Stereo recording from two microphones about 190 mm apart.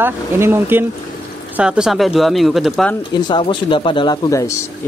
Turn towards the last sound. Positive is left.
turn(degrees=15)  # may be behind; listen again after turning